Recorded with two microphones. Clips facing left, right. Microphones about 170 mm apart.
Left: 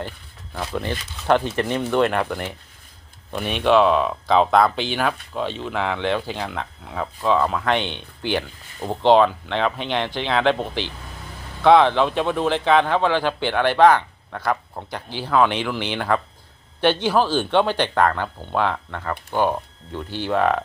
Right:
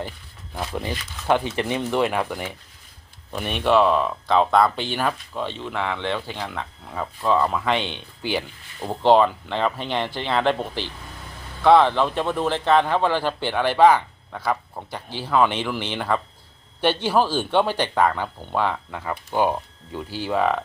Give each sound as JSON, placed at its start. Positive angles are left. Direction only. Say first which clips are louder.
{"t": 0.6, "sound": "speech", "louder": "left 2 dB", "side_deg": -10}